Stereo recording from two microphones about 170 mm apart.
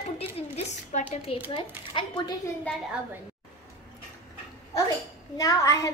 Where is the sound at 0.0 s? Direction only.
40° left (ahead or behind).